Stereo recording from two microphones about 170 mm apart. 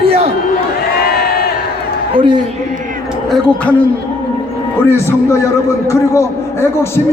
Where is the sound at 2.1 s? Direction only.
30° right (ahead or behind).